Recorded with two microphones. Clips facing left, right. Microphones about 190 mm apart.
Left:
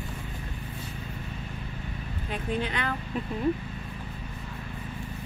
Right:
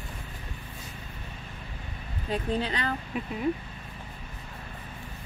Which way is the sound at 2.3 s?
35° right (ahead or behind).